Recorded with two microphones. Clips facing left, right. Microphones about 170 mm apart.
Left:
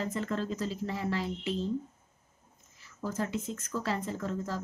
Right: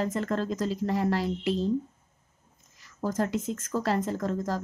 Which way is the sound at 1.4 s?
85° right.